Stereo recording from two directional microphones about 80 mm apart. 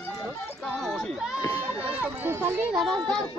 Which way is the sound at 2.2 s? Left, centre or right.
Right.